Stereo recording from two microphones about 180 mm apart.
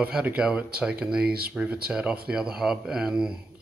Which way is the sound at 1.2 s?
60° right (ahead or behind).